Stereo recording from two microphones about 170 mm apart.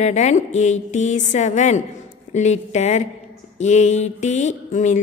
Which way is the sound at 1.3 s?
45° left (ahead or behind).